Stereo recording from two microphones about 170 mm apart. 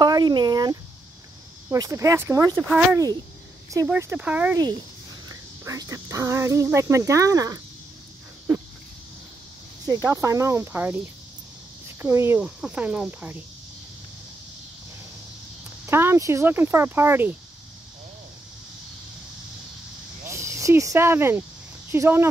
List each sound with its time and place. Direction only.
0.0 s speech: 25° right (ahead or behind); by 4.6 s 10° right (ahead or behind)
5.3 s speech: 20° right (ahead or behind)
9.8 s speech: 20° right (ahead or behind)
12.0 s speech: 15° right (ahead or behind)
15.8 s speech: 15° right (ahead or behind)
20.2 s speech: 15° right (ahead or behind)